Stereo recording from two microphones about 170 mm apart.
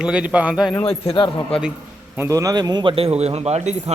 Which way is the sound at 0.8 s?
35° left (ahead or behind).